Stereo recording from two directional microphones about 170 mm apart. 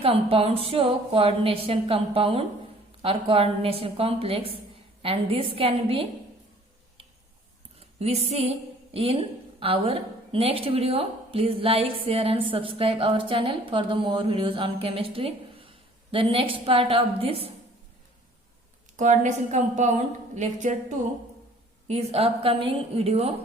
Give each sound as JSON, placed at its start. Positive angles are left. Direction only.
{"t": 0.0, "sound": "a woman's voice", "side_deg": -35}
{"t": 7.8, "sound": "a woman's voice", "side_deg": -35}
{"t": 18.9, "sound": "a woman's voice", "side_deg": -45}